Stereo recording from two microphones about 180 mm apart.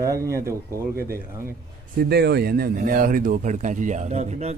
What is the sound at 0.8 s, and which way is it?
Speech, 55° right (ahead or behind).